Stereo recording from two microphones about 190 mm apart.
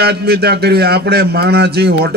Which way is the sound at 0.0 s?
55° right (ahead or behind).